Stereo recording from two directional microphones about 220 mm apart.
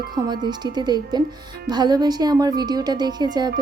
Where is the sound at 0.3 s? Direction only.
20° right (ahead or behind).